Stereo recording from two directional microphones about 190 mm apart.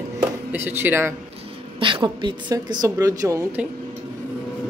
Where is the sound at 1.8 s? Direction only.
25° right (ahead or behind).